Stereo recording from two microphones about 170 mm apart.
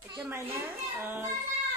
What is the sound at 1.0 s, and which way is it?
Speech, 15° right (ahead or behind).